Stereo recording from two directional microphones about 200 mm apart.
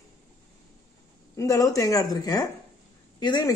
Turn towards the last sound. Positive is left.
turn(degrees=20)  # may be behind; listen again after turning